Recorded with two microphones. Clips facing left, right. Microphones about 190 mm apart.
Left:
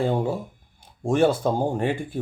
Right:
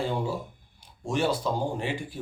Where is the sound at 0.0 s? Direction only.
50° left (ahead or behind).